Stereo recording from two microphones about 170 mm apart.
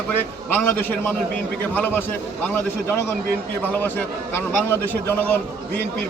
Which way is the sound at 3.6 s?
10° left (ahead or behind).